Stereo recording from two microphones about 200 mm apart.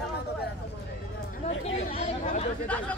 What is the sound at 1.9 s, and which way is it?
Speech, 35° left (ahead or behind).